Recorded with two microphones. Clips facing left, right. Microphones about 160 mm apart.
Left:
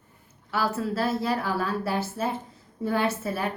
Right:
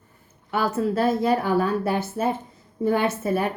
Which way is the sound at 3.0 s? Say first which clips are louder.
Right 4 dB; 50° right (ahead or behind).